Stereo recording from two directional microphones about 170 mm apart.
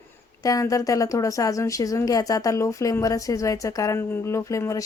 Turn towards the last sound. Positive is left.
turn(degrees=20)  # may be behind; listen again after turning